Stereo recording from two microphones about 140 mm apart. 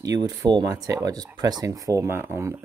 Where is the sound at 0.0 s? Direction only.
25° right (ahead or behind).